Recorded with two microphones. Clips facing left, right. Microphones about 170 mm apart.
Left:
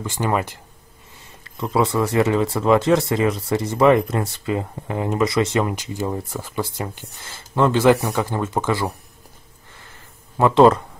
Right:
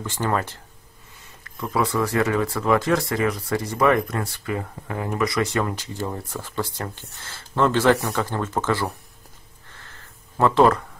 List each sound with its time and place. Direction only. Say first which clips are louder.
0.0 s speech: left 2 dB; 15° left (ahead or behind)
1.4 s speech: left 4 dB; 25° left (ahead or behind)
10.3 s speech: left 4 dB; 15° left (ahead or behind)